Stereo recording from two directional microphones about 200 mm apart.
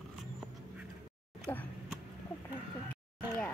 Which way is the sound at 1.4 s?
10° left (ahead or behind).